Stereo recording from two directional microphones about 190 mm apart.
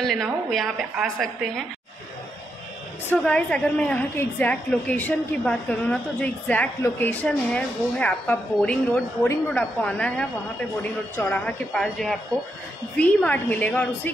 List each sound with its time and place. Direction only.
0.0 s a woman's voice: centre (ahead or behind)
3.1 s a woman's voice: 5° left (ahead or behind)